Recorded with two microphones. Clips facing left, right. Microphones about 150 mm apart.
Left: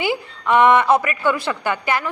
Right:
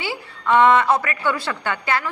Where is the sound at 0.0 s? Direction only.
15° left (ahead or behind).